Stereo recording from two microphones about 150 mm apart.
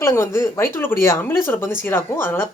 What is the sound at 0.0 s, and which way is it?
Speech, 20° left (ahead or behind).